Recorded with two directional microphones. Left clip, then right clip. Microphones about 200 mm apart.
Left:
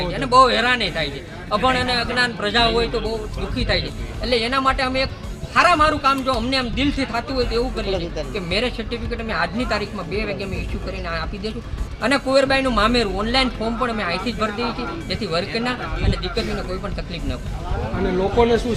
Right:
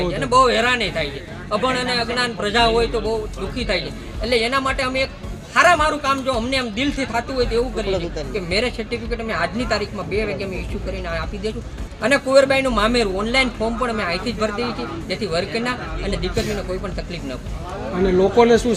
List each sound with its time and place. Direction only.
0.1 s a man's voice: 5° right (ahead or behind)
12.0 s a man's voice: 5° right (ahead or behind)
18.2 s speech: 50° right (ahead or behind)